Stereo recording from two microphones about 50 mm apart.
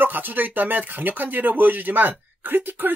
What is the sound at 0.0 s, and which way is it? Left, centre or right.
Speech, right.